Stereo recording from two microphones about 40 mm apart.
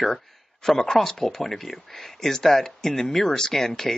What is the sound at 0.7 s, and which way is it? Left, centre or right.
Speech, centre.